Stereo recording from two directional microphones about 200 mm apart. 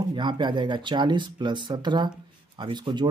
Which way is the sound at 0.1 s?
25° right (ahead or behind).